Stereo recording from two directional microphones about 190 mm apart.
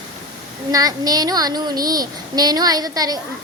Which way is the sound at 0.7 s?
20° right (ahead or behind).